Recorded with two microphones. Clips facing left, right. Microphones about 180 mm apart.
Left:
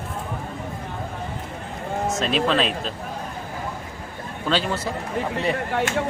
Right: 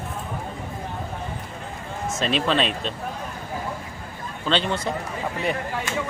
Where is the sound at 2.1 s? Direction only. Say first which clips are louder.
Even; centre (ahead or behind).